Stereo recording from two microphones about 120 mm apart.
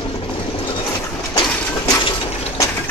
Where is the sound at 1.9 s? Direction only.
40° left (ahead or behind).